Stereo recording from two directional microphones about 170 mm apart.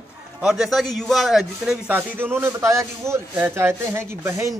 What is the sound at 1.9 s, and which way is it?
A man's voice, 15° right (ahead or behind).